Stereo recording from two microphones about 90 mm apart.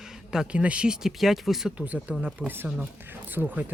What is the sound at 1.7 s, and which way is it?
Speech, 15° right (ahead or behind).